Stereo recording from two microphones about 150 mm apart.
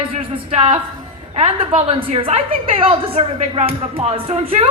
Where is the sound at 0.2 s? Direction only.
40° right (ahead or behind).